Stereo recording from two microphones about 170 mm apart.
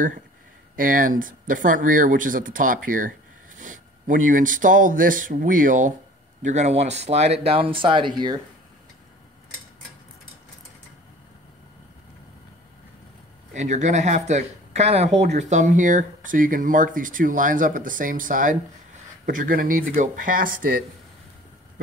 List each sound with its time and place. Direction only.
0.7 s speech: 55° right (ahead or behind); by 8.4 s 30° right (ahead or behind)
13.5 s speech: 45° right (ahead or behind)